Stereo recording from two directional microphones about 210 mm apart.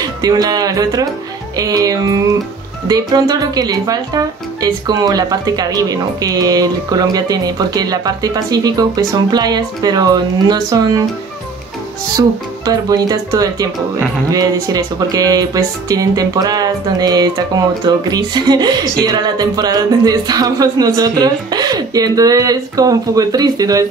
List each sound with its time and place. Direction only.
0.0 s speech: 20° right (ahead or behind)
12.2 s speech: 20° right (ahead or behind)